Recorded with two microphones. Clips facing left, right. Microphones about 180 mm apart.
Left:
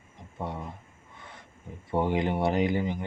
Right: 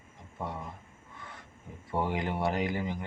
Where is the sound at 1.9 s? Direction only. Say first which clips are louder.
Left 5 dB; 25° left (ahead or behind).